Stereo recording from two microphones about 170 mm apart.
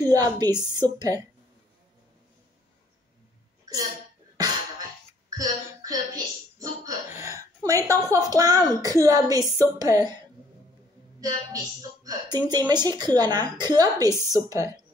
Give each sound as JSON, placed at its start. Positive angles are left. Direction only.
{"t": 0.1, "sound": "a woman's voice", "side_deg": -20}
{"t": 3.6, "sound": "hiccup", "side_deg": -20}
{"t": 5.4, "sound": "a woman's voice", "side_deg": -20}
{"t": 11.1, "sound": "a woman's voice", "side_deg": -20}